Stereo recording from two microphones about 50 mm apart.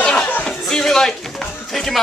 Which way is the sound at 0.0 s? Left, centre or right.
Centre.